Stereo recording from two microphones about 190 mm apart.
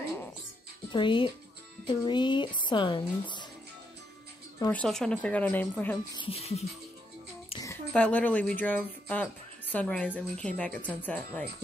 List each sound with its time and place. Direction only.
0.9 s speech: 25° left (ahead or behind)
4.6 s speech: 15° left (ahead or behind)
6.1 s speech: 30° left (ahead or behind)
7.9 s speech: 5° left (ahead or behind)